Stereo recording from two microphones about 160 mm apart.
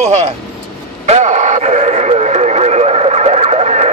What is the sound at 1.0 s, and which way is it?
Radio, 45° right (ahead or behind).